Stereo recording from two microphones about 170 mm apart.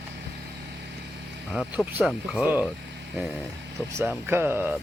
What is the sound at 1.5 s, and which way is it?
Speech, centre (ahead or behind).